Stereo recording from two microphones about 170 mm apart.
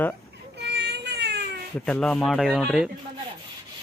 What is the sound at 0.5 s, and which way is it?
Baby cry, 75° right (ahead or behind).